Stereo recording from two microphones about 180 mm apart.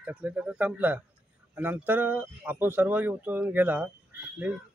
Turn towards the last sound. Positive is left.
turn(degrees=-5)  # may be behind; listen again after turning